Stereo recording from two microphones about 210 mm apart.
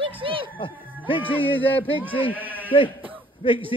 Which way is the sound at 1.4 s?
10° left (ahead or behind).